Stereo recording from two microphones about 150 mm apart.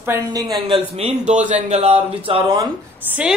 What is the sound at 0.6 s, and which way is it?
A man's voice, 40° right (ahead or behind).